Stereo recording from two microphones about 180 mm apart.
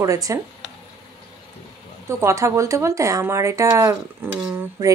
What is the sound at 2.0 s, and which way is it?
Speech, 15° right (ahead or behind).